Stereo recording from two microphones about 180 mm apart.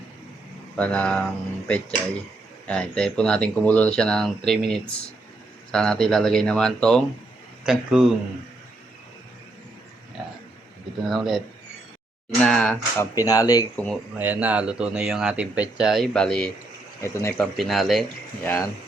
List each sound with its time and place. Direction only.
0.8 s speech: 5° left (ahead or behind)
11.1 s speech: centre (ahead or behind)
13.1 s speech: 20° left (ahead or behind)
13.7 s speech: 5° left (ahead or behind)
14.2 s speech: 10° right (ahead or behind)
17.0 s speech: 15° left (ahead or behind)
17.4 s speech: centre (ahead or behind)